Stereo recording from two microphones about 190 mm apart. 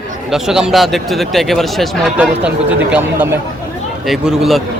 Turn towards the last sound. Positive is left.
turn(degrees=0)  # may be behind; listen again after turning